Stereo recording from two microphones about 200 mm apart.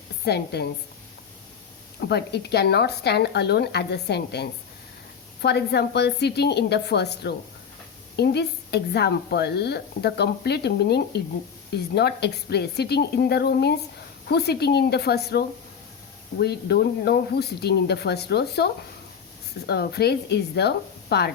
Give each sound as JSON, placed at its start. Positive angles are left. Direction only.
{"t": 0.3, "sound": "speech", "side_deg": 55}
{"t": 2.0, "sound": "speech", "side_deg": 55}